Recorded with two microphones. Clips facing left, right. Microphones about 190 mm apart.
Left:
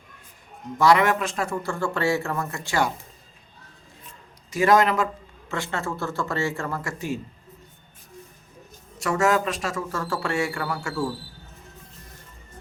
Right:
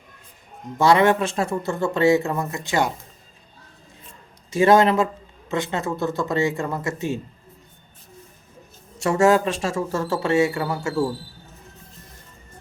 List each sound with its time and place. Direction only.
0.8 s a man's voice: 25° right (ahead or behind)
4.5 s a man's voice: 25° right (ahead or behind)
9.0 s a man's voice: 30° right (ahead or behind)